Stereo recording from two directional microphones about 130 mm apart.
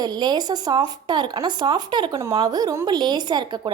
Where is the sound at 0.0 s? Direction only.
30° right (ahead or behind).